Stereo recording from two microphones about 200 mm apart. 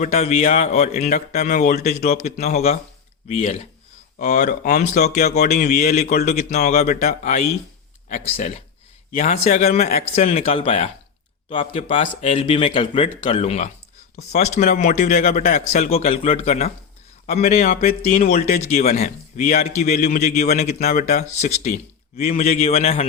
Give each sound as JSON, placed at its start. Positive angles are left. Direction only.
{"t": 0.0, "sound": "a man's voice", "side_deg": 35}
{"t": 5.0, "sound": "speech", "side_deg": 50}
{"t": 5.5, "sound": "a man's voice", "side_deg": 35}
{"t": 15.8, "sound": "a man's voice", "side_deg": 30}
{"t": 18.3, "sound": "a man's voice", "side_deg": 45}